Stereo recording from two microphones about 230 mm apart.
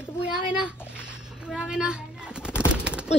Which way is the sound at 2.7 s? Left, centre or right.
Centre.